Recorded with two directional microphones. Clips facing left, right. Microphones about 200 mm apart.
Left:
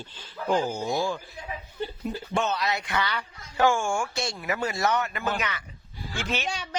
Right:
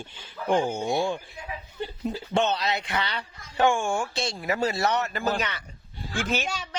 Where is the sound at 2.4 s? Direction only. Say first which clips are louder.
Right 2 dB; 25° right (ahead or behind).